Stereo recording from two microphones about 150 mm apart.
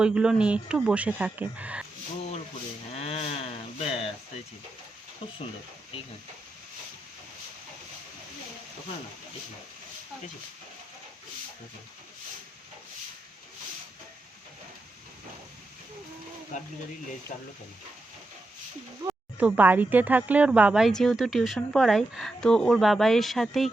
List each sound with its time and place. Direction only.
0.0 s speech: 5° right (ahead or behind)
3.0 s livestock: 40° left (ahead or behind)
19.4 s speech: 10° right (ahead or behind)